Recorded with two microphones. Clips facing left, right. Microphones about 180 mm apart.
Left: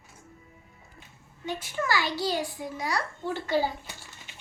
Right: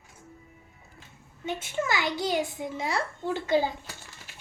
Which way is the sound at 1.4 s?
20° right (ahead or behind).